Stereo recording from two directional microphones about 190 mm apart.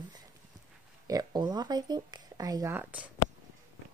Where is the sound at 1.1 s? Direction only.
20° right (ahead or behind).